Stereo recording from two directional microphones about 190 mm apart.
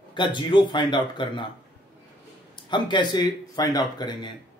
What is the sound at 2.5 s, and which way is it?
Speech, 25° left (ahead or behind).